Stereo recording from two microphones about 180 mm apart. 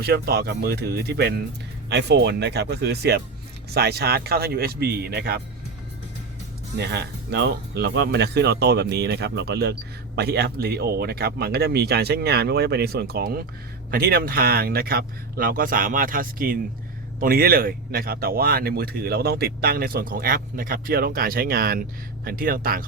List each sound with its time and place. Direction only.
0.0 s speech: 60° right (ahead or behind)
6.7 s speech: 65° right (ahead or behind)